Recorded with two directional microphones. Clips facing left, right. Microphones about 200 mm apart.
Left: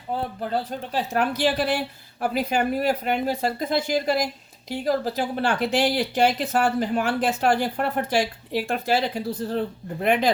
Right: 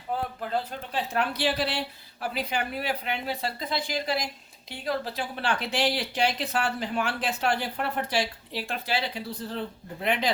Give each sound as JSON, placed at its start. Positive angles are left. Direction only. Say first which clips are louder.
{"t": 0.2, "sound": "speech", "louder": "left 3 dB", "side_deg": 40}